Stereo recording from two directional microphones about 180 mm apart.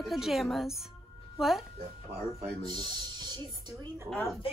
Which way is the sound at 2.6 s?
25° right (ahead or behind).